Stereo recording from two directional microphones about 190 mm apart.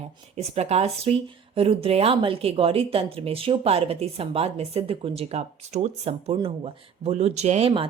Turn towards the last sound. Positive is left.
turn(degrees=-30)  # may be behind; listen again after turning